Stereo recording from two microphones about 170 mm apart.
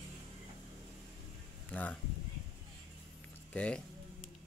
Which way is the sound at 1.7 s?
10° left (ahead or behind).